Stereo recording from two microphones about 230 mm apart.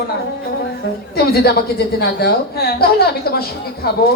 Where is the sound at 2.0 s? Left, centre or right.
Left.